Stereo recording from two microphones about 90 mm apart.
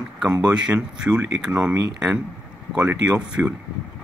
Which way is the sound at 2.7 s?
10° right (ahead or behind).